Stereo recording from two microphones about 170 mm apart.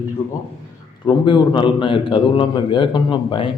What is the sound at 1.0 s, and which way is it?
A man's voice, 30° left (ahead or behind).